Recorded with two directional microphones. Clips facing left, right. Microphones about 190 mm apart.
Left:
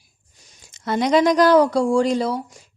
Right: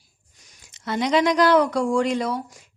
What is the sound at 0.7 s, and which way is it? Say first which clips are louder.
A woman's voice: left 3 dB; 45° left (ahead or behind).